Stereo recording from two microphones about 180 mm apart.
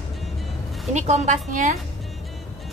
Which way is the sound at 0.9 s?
40° right (ahead or behind).